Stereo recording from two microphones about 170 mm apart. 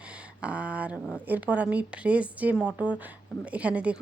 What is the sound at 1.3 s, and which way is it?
A woman's voice, 10° right (ahead or behind).